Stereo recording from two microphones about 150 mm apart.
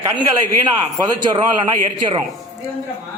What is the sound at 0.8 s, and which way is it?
Speech, 25° right (ahead or behind).